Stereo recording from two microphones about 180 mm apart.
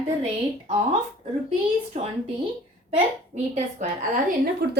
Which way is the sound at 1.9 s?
40° right (ahead or behind).